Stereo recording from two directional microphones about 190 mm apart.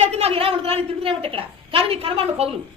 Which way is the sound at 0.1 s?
30° right (ahead or behind).